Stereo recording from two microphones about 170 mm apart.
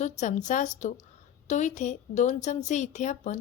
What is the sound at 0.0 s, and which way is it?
A woman's voice, 45° left (ahead or behind).